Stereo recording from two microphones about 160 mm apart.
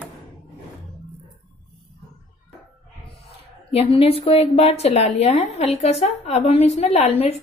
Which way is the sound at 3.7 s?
35° left (ahead or behind).